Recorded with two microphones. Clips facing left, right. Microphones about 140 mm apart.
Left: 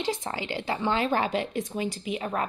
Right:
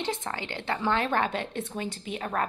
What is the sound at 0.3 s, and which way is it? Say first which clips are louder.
A woman's voice: left 2 dB; 10° left (ahead or behind).